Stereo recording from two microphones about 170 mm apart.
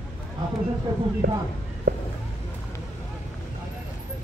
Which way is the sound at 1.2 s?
65° right (ahead or behind).